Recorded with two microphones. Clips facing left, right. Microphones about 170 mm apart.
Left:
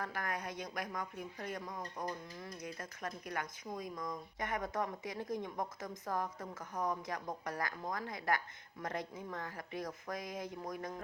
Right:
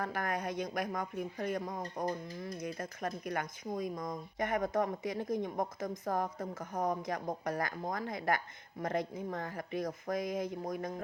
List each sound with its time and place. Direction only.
0.0 s speech: 50° right (ahead or behind)